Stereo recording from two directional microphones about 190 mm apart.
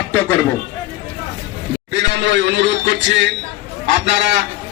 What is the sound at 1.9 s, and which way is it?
Speech, 65° right (ahead or behind).